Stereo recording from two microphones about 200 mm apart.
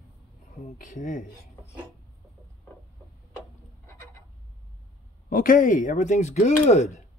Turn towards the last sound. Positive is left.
turn(degrees=35)  # may be behind; listen again after turning